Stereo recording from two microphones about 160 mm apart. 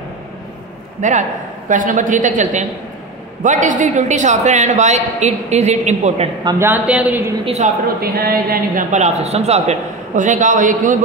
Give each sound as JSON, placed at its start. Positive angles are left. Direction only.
{"t": 1.0, "sound": "a man's voice", "side_deg": -50}
{"t": 6.6, "sound": "a woman's voice", "side_deg": -10}
{"t": 7.4, "sound": "a man's voice", "side_deg": -45}
{"t": 8.0, "sound": "speech", "side_deg": -70}
{"t": 8.9, "sound": "a man's voice", "side_deg": -45}